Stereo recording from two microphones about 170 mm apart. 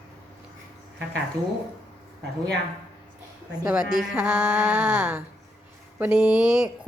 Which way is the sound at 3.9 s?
5° right (ahead or behind).